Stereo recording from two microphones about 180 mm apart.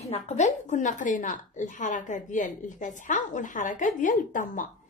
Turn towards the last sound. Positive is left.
turn(degrees=45)  # may be behind; listen again after turning